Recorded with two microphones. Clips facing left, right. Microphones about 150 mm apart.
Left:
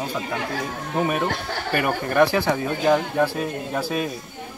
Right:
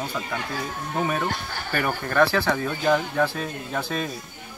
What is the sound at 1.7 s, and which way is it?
Speech, 20° left (ahead or behind).